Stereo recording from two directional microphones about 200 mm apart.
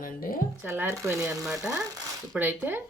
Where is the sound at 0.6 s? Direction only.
15° right (ahead or behind).